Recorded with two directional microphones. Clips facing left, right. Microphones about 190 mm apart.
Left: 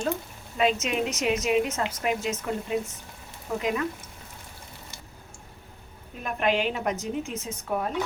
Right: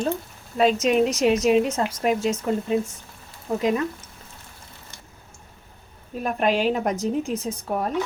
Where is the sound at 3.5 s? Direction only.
20° right (ahead or behind).